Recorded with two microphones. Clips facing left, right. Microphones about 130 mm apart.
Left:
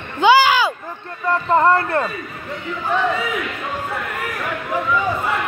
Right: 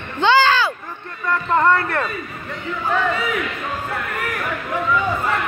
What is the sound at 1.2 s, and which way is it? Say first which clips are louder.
Speech: left 2 dB; 30° left (ahead or behind).